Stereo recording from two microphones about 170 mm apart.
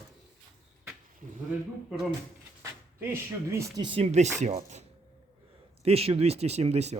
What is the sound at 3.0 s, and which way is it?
Speech, 15° right (ahead or behind).